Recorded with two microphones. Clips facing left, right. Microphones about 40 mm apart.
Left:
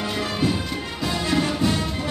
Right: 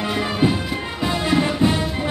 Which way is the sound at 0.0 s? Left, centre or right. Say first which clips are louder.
Right 4 dB; centre.